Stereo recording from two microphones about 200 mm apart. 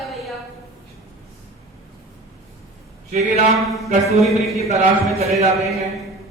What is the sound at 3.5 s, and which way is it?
Speech, centre (ahead or behind).